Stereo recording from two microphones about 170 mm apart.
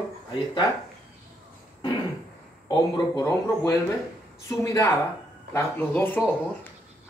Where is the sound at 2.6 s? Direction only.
20° left (ahead or behind).